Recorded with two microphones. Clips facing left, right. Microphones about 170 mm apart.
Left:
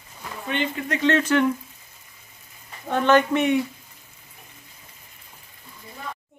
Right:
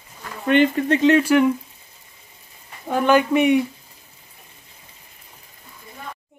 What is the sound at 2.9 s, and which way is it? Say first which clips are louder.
Speech: right 1 dB; 10° right (ahead or behind).